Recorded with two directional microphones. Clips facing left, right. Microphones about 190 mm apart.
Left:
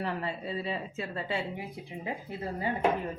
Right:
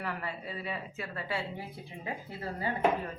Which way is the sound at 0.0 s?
25° left (ahead or behind).